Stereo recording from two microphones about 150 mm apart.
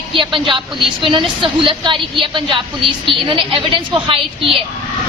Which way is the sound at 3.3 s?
35° right (ahead or behind).